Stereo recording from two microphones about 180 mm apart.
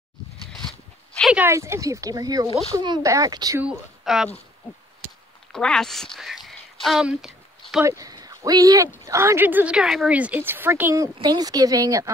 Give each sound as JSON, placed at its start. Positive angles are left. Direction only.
{"t": 0.5, "sound": "a sound", "side_deg": 0}
{"t": 1.4, "sound": "a woman's voice", "side_deg": -15}
{"t": 3.6, "sound": "speech", "side_deg": -5}
{"t": 5.5, "sound": "a woman's voice", "side_deg": 5}
{"t": 7.8, "sound": "a woman's voice", "side_deg": -20}